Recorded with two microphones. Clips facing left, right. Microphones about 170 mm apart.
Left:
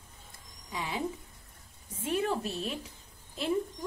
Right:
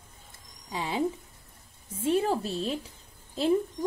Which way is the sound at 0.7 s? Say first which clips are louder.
Right 4 dB; 30° right (ahead or behind).